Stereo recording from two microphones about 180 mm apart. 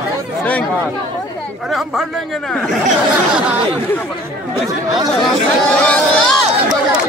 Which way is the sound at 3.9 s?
10° left (ahead or behind).